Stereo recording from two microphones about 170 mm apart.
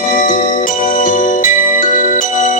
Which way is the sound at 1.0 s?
50° left (ahead or behind).